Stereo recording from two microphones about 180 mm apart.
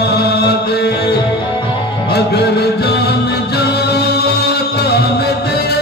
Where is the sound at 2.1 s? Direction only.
65° left (ahead or behind).